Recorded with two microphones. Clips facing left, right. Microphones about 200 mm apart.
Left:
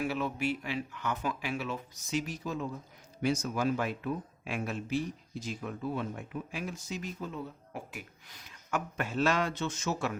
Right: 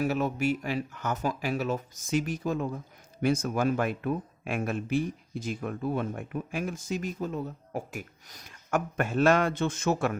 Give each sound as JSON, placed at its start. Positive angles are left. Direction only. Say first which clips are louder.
{"t": 0.0, "sound": "speech", "louder": "right 5 dB", "side_deg": -45}